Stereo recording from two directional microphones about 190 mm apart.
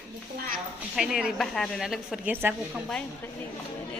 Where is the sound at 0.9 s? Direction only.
5° right (ahead or behind).